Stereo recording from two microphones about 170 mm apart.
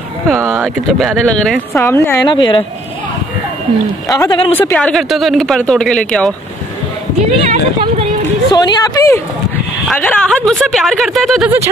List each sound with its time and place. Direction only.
0.8 s speech: centre (ahead or behind)
1.7 s speech: 15° left (ahead or behind)
2.2 s a woman's voice: 30° left (ahead or behind)
4.1 s a woman's voice: 25° left (ahead or behind)
4.6 s speech: 10° left (ahead or behind)
7.2 s speech: 45° right (ahead or behind)
8.5 s a woman's voice: 25° left (ahead or behind)
9.8 s speech: 5° left (ahead or behind)